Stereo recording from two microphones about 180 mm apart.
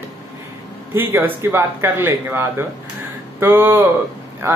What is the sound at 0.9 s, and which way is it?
Speech, 10° right (ahead or behind).